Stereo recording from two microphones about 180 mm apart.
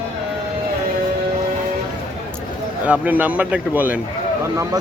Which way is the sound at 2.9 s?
10° right (ahead or behind).